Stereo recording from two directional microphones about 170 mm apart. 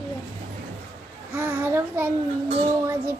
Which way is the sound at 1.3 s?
10° right (ahead or behind).